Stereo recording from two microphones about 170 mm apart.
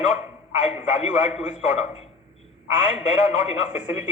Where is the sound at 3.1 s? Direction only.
40° left (ahead or behind).